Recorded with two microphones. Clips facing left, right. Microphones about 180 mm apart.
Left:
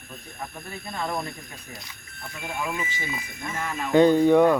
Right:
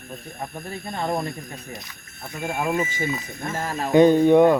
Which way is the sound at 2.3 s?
45° right (ahead or behind).